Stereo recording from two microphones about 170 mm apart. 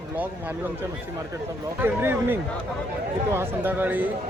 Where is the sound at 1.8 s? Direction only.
10° right (ahead or behind).